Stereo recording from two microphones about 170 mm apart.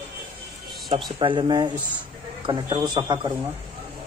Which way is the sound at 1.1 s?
30° right (ahead or behind).